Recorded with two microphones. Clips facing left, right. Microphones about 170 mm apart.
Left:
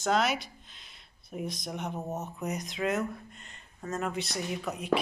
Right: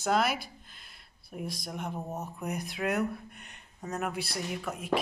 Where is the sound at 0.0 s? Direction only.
5° right (ahead or behind).